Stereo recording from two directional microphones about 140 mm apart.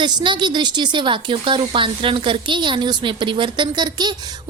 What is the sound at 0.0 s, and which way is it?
A woman's voice, 30° right (ahead or behind).